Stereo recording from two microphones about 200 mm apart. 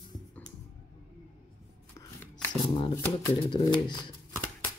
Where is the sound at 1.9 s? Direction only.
10° left (ahead or behind).